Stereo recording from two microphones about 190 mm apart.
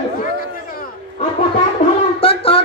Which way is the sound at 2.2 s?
30° left (ahead or behind).